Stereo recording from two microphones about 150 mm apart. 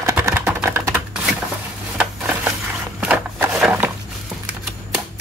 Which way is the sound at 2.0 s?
10° right (ahead or behind).